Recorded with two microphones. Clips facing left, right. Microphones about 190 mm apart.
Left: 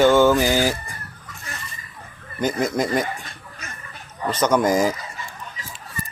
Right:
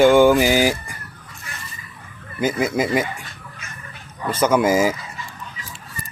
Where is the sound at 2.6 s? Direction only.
5° right (ahead or behind).